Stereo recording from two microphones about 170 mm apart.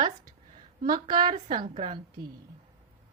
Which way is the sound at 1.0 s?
25° right (ahead or behind).